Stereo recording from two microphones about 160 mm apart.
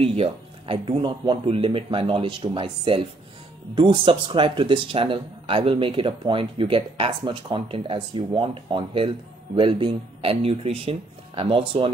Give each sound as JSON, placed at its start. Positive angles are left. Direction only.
{"t": 0.0, "sound": "speech", "side_deg": -35}